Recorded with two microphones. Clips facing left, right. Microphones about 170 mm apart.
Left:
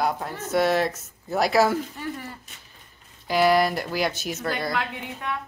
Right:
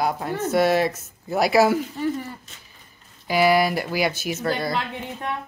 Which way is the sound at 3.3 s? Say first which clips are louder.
Right 1 dB; 5° right (ahead or behind).